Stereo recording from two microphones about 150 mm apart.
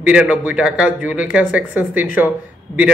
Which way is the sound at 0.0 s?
5° right (ahead or behind).